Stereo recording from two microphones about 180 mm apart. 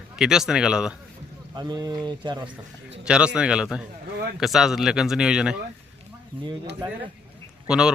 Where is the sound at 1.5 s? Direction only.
20° right (ahead or behind).